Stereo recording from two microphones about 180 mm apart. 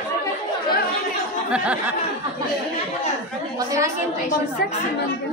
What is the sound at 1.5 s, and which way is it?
Speech, 5° right (ahead or behind).